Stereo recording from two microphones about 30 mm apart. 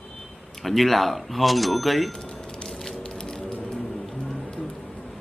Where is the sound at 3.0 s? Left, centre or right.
Left.